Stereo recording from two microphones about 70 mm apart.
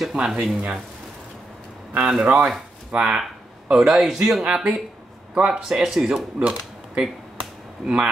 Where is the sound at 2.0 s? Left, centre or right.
Centre.